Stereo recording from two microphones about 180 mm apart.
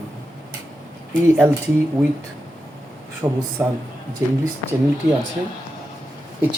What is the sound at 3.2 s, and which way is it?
Speech, 20° right (ahead or behind).